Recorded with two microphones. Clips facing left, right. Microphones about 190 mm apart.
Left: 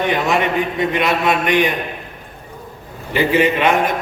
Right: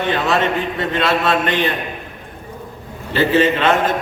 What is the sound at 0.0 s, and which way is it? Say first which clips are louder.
A man's voice: even; 15° left (ahead or behind).